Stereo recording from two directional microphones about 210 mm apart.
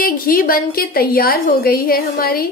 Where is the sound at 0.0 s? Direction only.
45° left (ahead or behind).